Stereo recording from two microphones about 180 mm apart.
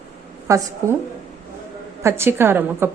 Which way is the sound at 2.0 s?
15° right (ahead or behind).